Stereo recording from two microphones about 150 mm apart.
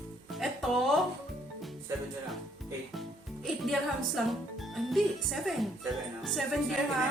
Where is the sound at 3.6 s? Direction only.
Centre (ahead or behind).